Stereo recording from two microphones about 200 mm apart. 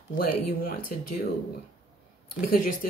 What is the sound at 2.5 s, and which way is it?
Speech, 40° left (ahead or behind).